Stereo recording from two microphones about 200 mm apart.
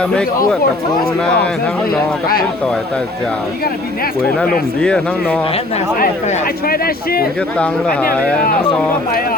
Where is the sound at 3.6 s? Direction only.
50° left (ahead or behind).